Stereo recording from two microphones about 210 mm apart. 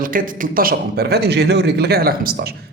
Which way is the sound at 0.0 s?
40° right (ahead or behind).